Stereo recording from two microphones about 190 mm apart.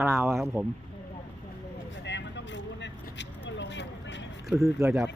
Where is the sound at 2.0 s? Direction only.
65° left (ahead or behind).